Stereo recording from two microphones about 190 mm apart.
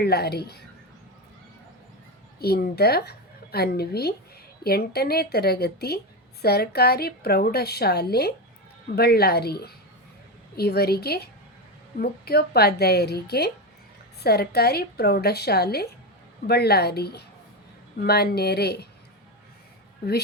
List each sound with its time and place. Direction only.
0.0 s a woman's voice: 55° left (ahead or behind)
2.4 s a woman's voice: 55° left (ahead or behind)